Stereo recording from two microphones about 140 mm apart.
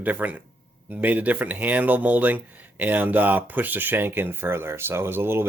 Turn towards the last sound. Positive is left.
turn(degrees=-15)  # may be behind; listen again after turning